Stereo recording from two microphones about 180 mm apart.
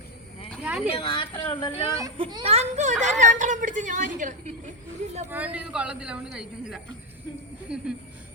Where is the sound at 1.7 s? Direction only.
15° right (ahead or behind).